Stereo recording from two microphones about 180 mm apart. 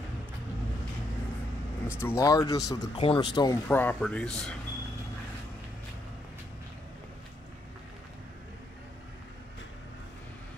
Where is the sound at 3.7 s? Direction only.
10° left (ahead or behind).